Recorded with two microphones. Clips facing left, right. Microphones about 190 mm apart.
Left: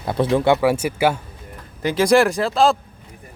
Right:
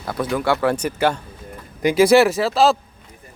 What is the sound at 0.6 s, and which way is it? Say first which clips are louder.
Speech: left 1 dB; 10° left (ahead or behind).